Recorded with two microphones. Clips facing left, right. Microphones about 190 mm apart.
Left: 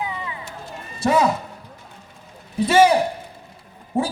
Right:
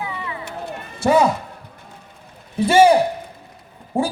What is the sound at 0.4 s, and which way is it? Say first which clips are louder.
Run: right 6 dB; 65° right (ahead or behind).